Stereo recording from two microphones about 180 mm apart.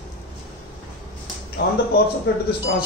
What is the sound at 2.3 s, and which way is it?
Speech, 70° left (ahead or behind).